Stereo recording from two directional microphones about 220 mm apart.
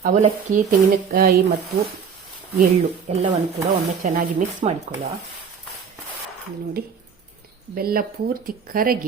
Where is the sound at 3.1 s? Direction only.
30° right (ahead or behind).